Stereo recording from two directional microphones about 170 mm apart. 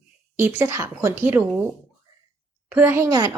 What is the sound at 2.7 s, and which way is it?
Speech, 10° right (ahead or behind).